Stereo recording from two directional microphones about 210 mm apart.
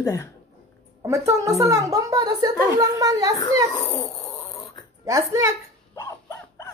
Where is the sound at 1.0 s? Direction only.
15° right (ahead or behind).